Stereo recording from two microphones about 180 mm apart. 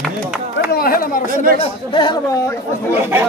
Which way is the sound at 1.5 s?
25° left (ahead or behind).